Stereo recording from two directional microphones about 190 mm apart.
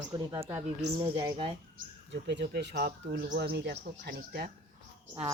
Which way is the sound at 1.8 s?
45° right (ahead or behind).